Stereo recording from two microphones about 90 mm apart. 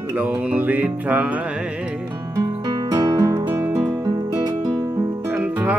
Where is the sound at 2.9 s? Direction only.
45° right (ahead or behind).